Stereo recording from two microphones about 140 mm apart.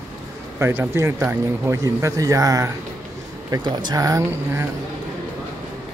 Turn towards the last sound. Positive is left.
turn(degrees=-25)  # may be behind; listen again after turning